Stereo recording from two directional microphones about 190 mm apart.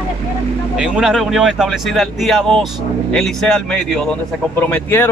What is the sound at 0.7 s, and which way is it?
A man's voice, 5° right (ahead or behind).